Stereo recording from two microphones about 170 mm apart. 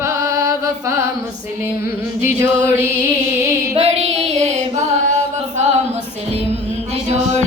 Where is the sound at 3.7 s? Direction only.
40° right (ahead or behind).